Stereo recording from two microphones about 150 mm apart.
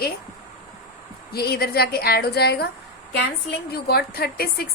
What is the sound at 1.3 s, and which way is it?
A woman's voice, 90° left.